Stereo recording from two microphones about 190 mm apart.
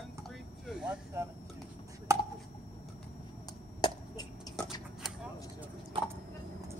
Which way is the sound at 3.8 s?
20° left (ahead or behind).